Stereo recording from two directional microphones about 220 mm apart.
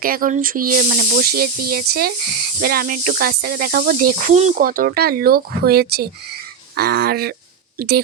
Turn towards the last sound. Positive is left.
turn(degrees=-45)  # may be behind; listen again after turning